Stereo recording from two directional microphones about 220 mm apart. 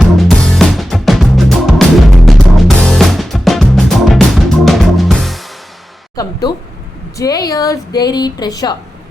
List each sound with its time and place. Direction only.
0.2 s music: centre (ahead or behind)
6.2 s a woman's voice: 15° left (ahead or behind)